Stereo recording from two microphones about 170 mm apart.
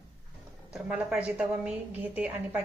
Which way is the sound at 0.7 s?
5° right (ahead or behind).